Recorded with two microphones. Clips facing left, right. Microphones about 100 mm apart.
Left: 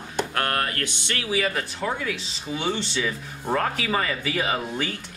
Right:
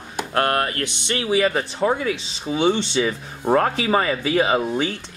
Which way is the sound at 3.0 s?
35° right (ahead or behind).